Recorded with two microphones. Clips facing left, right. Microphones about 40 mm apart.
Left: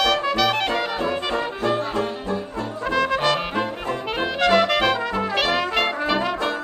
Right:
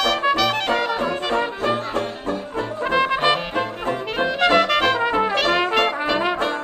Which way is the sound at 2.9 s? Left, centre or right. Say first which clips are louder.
Right 2 dB; right.